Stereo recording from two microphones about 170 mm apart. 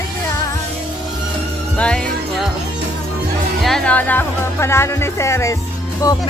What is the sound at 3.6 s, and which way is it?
Speech, 5° left (ahead or behind).